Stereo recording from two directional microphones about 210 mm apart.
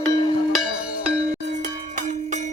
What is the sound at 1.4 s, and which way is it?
Cowbell, 35° right (ahead or behind).